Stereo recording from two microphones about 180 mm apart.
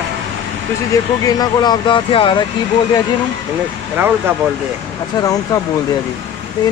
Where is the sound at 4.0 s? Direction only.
10° right (ahead or behind).